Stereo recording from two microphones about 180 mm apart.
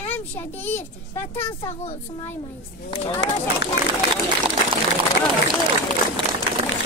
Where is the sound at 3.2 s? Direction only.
75° left (ahead or behind).